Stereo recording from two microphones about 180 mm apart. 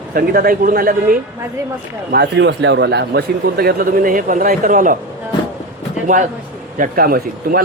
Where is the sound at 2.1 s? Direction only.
70° right (ahead or behind); by 5.0 s 50° right (ahead or behind).